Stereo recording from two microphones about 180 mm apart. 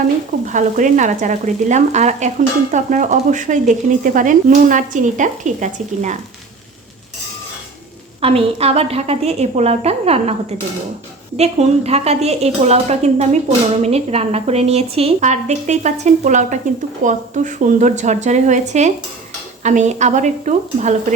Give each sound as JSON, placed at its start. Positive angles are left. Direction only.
{"t": 0.4, "sound": "speech", "side_deg": -45}
{"t": 8.2, "sound": "a woman's voice", "side_deg": -35}
{"t": 11.3, "sound": "a woman's voice", "side_deg": -35}